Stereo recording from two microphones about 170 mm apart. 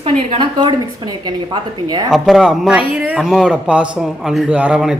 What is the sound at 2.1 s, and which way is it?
Speech, centre (ahead or behind).